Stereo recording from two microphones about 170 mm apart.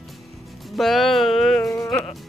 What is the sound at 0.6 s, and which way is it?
Music, centre (ahead or behind).